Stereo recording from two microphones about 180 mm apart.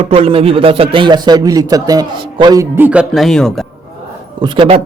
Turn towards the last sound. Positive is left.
turn(degrees=-30)  # may be behind; listen again after turning